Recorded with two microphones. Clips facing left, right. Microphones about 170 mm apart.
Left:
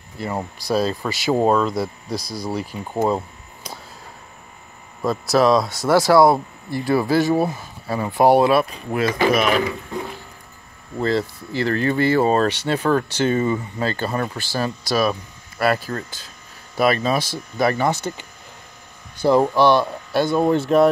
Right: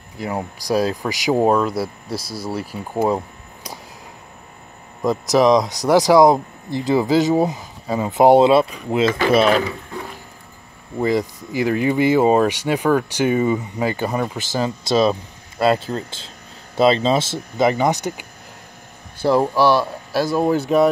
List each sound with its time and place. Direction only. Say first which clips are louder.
0.2 s speech: right 1 dB; 10° right (ahead or behind)
5.0 s speech: right 2 dB; 15° right (ahead or behind)
11.0 s speech: right 2 dB; 15° right (ahead or behind)
19.2 s speech: left 1 dB; 5° right (ahead or behind)